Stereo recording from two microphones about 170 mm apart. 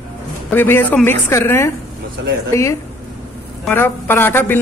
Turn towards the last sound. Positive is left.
turn(degrees=10)  # may be behind; listen again after turning